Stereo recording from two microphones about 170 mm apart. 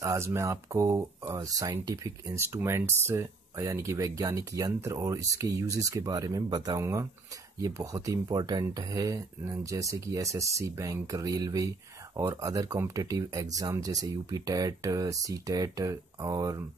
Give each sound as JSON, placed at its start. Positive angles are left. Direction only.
{"t": 0.0, "sound": "speech", "side_deg": -15}